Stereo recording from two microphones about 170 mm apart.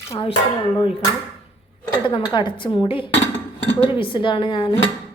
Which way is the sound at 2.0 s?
25° left (ahead or behind).